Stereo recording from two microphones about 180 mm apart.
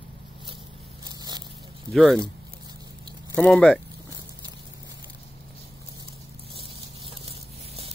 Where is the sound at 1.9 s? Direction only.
Centre (ahead or behind).